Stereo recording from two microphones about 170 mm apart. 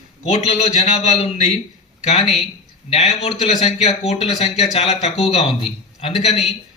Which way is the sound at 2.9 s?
45° left (ahead or behind).